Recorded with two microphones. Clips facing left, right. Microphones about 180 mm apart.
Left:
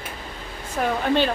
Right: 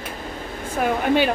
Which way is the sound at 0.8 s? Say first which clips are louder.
Right 2 dB; 5° right (ahead or behind).